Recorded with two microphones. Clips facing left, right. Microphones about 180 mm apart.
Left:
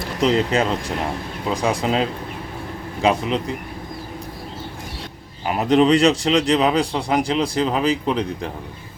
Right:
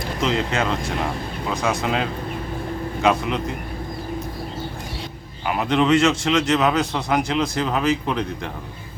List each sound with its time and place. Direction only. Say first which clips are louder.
0.2 s speech: left 5 dB; 35° left (ahead or behind)
5.5 s speech: left 3 dB; 40° left (ahead or behind)